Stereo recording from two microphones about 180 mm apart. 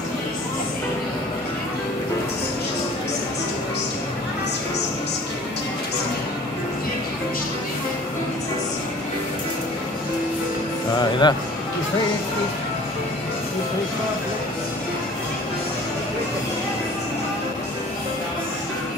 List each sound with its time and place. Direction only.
11.0 s music: 25° left (ahead or behind)